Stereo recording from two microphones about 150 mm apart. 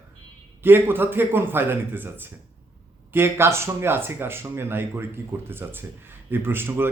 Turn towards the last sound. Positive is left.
turn(degrees=-15)  # may be behind; listen again after turning